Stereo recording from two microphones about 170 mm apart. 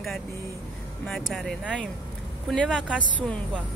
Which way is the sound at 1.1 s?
Centre (ahead or behind).